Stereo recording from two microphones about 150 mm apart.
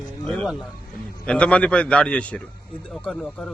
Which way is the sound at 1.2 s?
5° left (ahead or behind).